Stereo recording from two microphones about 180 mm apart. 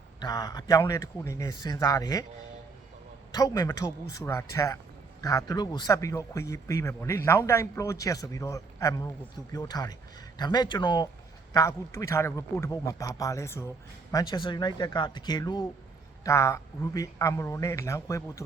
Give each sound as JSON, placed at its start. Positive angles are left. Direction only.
{"t": 0.2, "sound": "a man's voice", "side_deg": 20}
{"t": 3.3, "sound": "a man's voice", "side_deg": 20}